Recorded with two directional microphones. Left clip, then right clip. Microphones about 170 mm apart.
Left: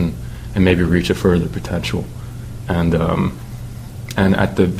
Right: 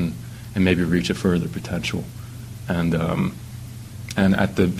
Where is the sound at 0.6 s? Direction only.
30° right (ahead or behind).